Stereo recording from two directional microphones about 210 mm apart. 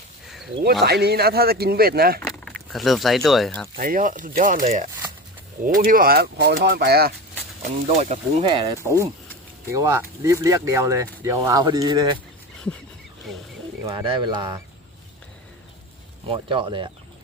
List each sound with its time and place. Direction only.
0.9 s speech: 50° right (ahead or behind)
2.4 s speech: centre (ahead or behind)
3.8 s speech: 40° right (ahead or behind)
7.9 s speech: 35° right (ahead or behind)
8.4 s speech: 20° right (ahead or behind)
13.8 s speech: 20° right (ahead or behind)
16.2 s speech: 25° right (ahead or behind)